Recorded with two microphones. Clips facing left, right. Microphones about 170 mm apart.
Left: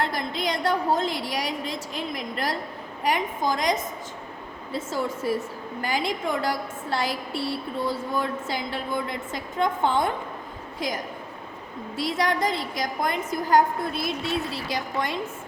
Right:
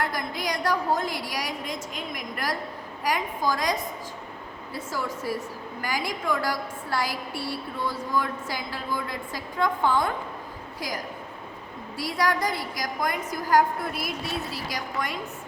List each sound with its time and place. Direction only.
0.0 s a woman's voice: 25° left (ahead or behind)